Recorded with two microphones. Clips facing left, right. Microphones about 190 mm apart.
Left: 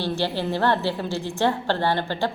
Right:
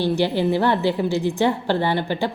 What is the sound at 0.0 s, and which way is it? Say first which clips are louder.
A woman's voice: right 6 dB; 15° right (ahead or behind).